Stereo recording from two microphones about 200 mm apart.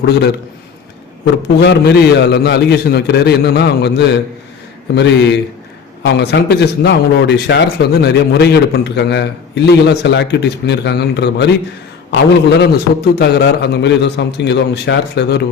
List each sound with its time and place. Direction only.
1.5 s a man's voice: 55° left (ahead or behind)